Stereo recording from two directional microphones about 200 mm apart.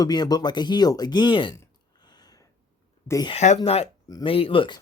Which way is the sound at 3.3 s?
35° left (ahead or behind).